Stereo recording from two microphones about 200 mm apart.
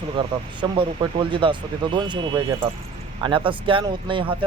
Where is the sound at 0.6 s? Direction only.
25° right (ahead or behind).